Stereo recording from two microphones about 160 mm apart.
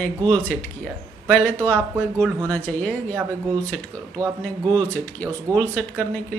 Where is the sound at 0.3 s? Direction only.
10° left (ahead or behind).